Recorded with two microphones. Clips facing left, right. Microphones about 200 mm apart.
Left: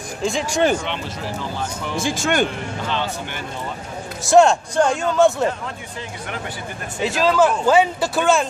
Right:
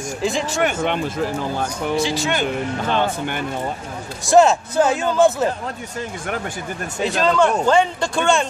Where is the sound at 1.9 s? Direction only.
50° left (ahead or behind).